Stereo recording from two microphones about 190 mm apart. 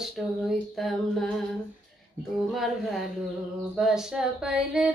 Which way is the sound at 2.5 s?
Centre (ahead or behind).